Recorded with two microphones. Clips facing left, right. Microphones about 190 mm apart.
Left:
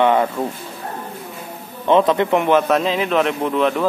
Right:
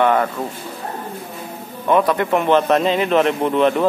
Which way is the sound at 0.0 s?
15° left (ahead or behind).